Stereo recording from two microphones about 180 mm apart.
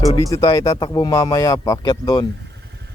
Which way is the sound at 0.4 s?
20° left (ahead or behind).